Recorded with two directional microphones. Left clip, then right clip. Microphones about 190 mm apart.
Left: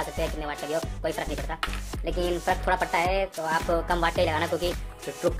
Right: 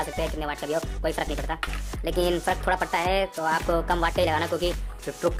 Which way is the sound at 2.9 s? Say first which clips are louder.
Right 1 dB; 30° right (ahead or behind).